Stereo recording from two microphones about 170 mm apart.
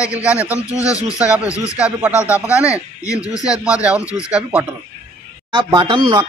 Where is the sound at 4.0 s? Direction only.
20° left (ahead or behind).